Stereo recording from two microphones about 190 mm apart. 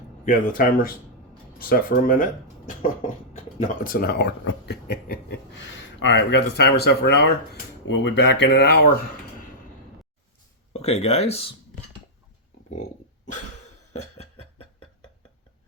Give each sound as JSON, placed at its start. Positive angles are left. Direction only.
{"t": 0.3, "sound": "speech", "side_deg": 45}
{"t": 5.7, "sound": "speech", "side_deg": 75}
{"t": 10.8, "sound": "speech", "side_deg": 35}
{"t": 14.0, "sound": "a sound", "side_deg": 30}